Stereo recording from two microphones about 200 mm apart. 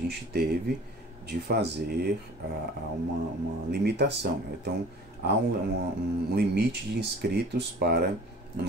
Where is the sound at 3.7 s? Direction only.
55° right (ahead or behind).